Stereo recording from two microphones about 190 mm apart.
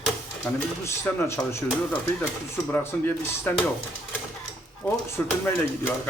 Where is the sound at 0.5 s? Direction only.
10° left (ahead or behind).